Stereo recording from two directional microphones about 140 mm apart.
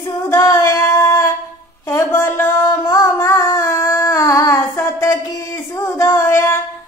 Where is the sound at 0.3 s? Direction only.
20° left (ahead or behind).